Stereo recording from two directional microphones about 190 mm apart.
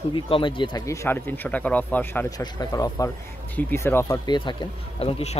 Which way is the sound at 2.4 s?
20° left (ahead or behind).